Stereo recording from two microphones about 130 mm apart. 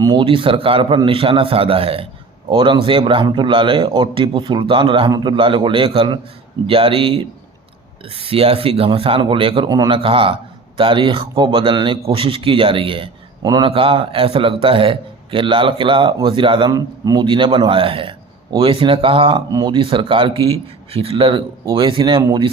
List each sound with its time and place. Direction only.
0.0 s a man's voice: 35° right (ahead or behind)
10.0 s a man's voice: 45° right (ahead or behind)
13.4 s speech: 30° right (ahead or behind)
13.7 s a man's voice: 45° right (ahead or behind)
19.5 s a man's voice: 30° right (ahead or behind)
22.2 s speech: 25° right (ahead or behind)